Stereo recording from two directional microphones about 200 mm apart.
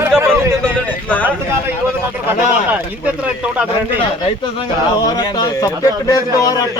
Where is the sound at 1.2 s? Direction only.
10° right (ahead or behind).